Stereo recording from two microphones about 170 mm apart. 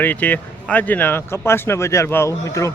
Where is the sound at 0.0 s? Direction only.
10° left (ahead or behind).